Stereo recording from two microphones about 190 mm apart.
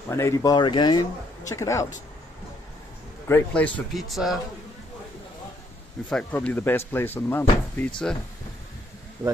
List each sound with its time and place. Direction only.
0.1 s speech: 15° left (ahead or behind)
3.3 s speech: 10° left (ahead or behind)
6.0 s speech: 5° left (ahead or behind)
9.2 s speech: 10° right (ahead or behind)